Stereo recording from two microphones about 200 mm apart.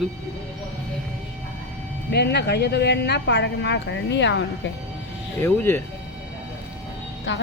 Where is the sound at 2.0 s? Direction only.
55° left (ahead or behind).